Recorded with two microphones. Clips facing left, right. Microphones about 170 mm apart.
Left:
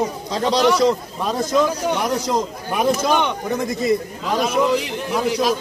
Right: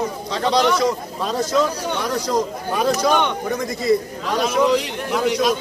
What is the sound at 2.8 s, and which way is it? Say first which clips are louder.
Speech: even; 10° left (ahead or behind).